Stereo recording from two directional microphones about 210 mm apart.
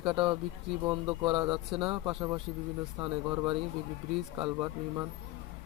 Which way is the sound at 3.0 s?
25° right (ahead or behind).